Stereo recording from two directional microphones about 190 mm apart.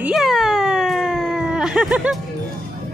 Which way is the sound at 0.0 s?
Centre (ahead or behind).